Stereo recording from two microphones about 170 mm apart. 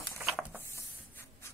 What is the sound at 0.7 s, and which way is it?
Rub, 15° left (ahead or behind).